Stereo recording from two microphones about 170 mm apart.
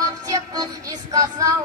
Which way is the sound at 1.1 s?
20° right (ahead or behind).